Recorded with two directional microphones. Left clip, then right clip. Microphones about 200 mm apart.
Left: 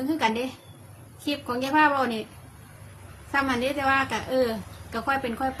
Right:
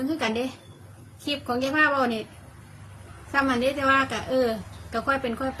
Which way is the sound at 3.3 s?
15° left (ahead or behind).